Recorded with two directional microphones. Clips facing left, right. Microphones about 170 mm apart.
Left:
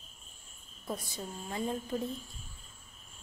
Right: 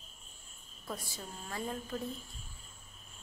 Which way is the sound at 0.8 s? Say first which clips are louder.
Left 4 dB; 20° left (ahead or behind).